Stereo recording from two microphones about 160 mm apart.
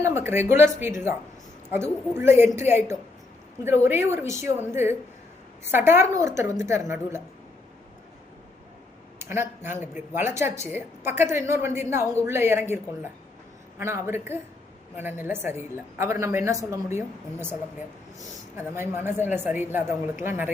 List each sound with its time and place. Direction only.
0.0 s a woman's voice: 15° right (ahead or behind)
9.1 s a sound: 15° right (ahead or behind)
9.6 s a woman's voice: 15° right (ahead or behind)